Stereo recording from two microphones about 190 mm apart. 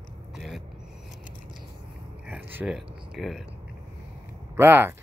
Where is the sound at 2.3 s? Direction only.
10° right (ahead or behind).